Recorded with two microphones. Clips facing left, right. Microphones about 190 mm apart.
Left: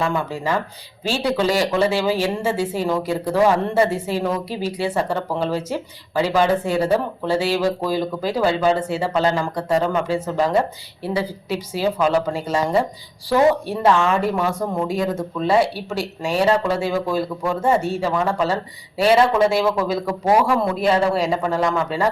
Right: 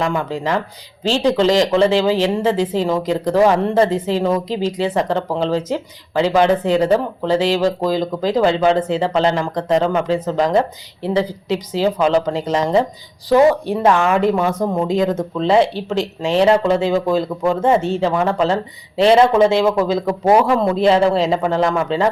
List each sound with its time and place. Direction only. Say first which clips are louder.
0.3 s speech: right 3 dB; 15° right (ahead or behind)
1.0 s speech: right 5 dB; 10° left (ahead or behind)
1.4 s speech: right 4 dB; 20° right (ahead or behind)